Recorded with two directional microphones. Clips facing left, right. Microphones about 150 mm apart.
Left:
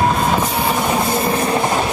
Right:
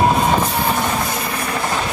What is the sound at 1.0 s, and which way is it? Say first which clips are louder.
Train: left 6 dB; 30° left (ahead or behind).